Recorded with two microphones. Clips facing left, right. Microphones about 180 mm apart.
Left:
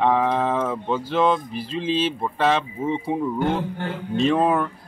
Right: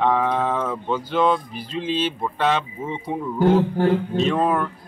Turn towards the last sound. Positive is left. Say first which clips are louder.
# left 1 dB
turn(degrees=10)  # may be behind; listen again after turning